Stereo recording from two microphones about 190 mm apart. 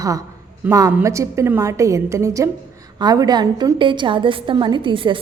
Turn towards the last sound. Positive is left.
turn(degrees=-25)  # may be behind; listen again after turning